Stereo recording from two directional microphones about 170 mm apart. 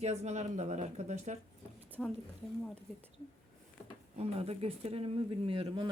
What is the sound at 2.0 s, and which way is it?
Speech, 5° left (ahead or behind).